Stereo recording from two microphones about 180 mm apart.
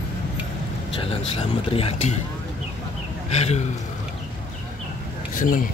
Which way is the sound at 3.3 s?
35° left (ahead or behind).